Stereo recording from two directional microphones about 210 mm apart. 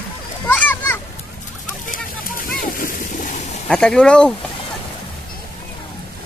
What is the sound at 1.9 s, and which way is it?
Boat, 45° left (ahead or behind).